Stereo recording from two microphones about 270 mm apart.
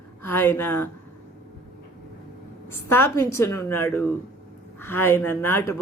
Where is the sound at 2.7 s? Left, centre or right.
Centre.